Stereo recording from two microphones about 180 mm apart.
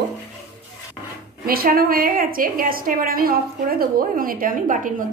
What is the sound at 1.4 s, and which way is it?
A woman's voice, 55° right (ahead or behind).